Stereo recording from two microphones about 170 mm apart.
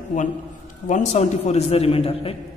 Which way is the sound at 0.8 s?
45° left (ahead or behind).